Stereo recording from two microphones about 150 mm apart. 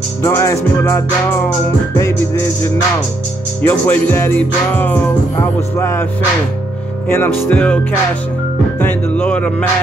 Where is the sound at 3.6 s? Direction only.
10° left (ahead or behind).